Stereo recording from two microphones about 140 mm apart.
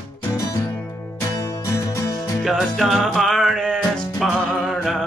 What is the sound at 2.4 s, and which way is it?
Music, centre (ahead or behind).